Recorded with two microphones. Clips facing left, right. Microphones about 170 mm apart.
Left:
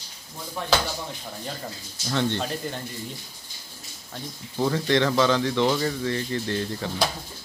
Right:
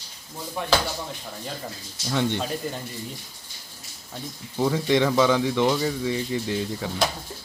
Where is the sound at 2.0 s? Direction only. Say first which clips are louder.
Right 1 dB; 5° right (ahead or behind).